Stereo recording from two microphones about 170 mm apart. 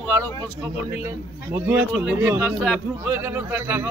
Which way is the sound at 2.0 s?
10° right (ahead or behind).